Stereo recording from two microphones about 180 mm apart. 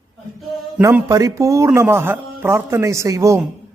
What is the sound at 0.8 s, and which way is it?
A man's voice, 15° right (ahead or behind).